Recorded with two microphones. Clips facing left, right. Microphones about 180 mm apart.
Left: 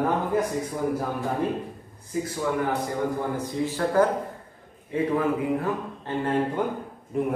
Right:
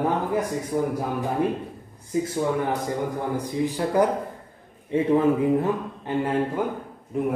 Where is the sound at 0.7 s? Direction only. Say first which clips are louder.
Right 5 dB; 25° right (ahead or behind).